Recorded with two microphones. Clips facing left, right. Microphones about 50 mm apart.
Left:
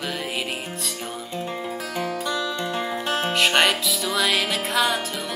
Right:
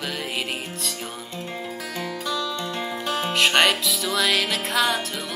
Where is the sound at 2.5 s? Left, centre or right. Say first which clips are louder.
Left 2 dB; centre.